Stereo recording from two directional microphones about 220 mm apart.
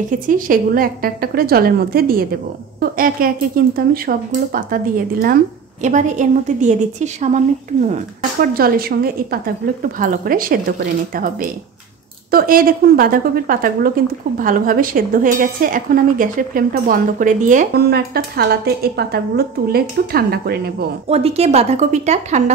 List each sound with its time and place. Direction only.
0.3 s speech: 40° right (ahead or behind)
17.8 s speech: 45° right (ahead or behind)
21.1 s speech: 25° right (ahead or behind)